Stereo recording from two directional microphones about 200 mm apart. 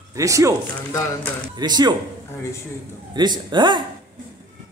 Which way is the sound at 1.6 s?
20° right (ahead or behind).